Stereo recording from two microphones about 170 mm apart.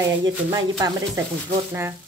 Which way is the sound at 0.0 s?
25° right (ahead or behind).